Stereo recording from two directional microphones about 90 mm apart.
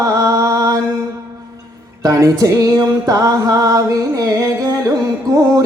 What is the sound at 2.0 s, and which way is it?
Music, 40° right (ahead or behind).